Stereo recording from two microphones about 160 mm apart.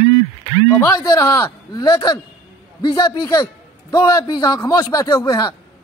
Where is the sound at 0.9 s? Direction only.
20° left (ahead or behind).